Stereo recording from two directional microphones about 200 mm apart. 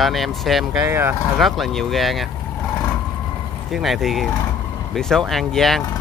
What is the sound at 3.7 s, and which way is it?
Speech, centre (ahead or behind).